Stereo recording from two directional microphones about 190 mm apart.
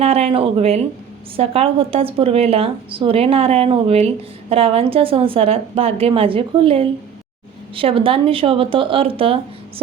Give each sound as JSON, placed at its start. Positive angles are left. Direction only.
{"t": 0.0, "sound": "speech", "side_deg": -30}